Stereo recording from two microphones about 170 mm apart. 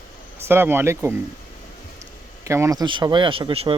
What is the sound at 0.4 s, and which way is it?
Speech, 15° right (ahead or behind).